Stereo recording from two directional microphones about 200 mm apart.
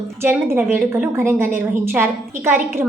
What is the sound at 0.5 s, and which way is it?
A woman's voice, 10° right (ahead or behind).